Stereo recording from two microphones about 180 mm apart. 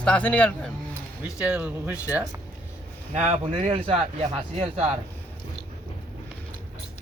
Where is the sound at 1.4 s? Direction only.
5° right (ahead or behind).